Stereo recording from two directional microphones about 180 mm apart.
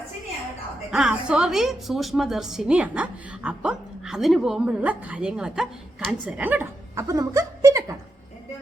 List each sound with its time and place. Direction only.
0.9 s a woman's voice: 5° right (ahead or behind)